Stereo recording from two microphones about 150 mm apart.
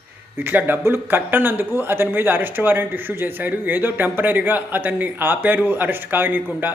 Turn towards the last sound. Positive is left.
turn(degrees=-15)  # may be behind; listen again after turning